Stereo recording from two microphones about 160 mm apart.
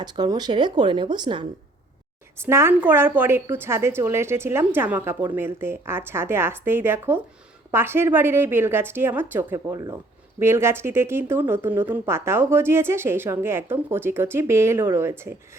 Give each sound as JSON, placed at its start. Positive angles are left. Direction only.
{"t": 0.0, "sound": "speech", "side_deg": -25}
{"t": 2.4, "sound": "a woman's voice", "side_deg": -15}